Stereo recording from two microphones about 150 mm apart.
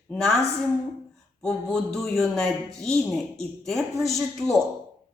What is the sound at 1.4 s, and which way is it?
A man's voice, 5° left (ahead or behind).